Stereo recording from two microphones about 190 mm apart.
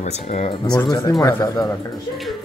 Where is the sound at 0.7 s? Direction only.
20° left (ahead or behind).